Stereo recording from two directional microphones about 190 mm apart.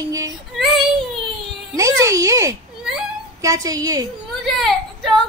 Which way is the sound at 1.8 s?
15° right (ahead or behind).